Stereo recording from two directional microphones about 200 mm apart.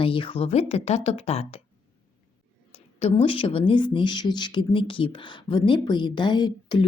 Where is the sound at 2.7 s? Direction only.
30° left (ahead or behind).